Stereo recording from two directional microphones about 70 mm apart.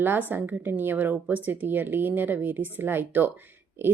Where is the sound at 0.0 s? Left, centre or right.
Right.